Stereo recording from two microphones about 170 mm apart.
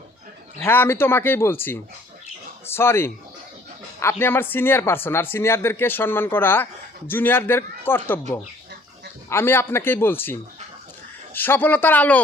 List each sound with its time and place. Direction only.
0.6 s speech: 15° left (ahead or behind)
9.3 s speech: 15° left (ahead or behind)